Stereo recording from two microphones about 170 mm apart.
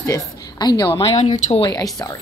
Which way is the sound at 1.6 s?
20° left (ahead or behind).